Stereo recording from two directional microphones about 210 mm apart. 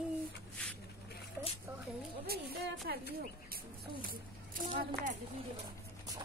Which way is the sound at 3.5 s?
45° right (ahead or behind).